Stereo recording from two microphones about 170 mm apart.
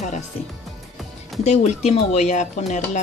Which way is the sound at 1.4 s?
40° left (ahead or behind).